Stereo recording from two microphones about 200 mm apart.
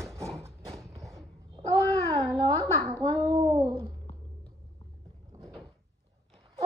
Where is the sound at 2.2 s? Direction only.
15° left (ahead or behind).